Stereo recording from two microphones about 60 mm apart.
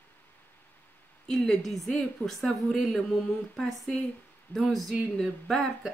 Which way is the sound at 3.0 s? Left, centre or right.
Centre.